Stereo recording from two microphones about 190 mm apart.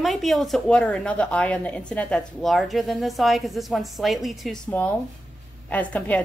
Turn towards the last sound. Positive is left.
turn(degrees=10)  # may be behind; listen again after turning